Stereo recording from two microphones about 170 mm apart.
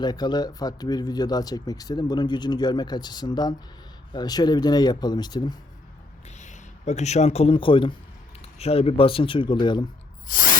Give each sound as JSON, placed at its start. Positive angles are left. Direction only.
{"t": 0.0, "sound": "speech", "side_deg": 25}
{"t": 6.2, "sound": "a man's voice", "side_deg": 45}
{"t": 10.2, "sound": "spray", "side_deg": 55}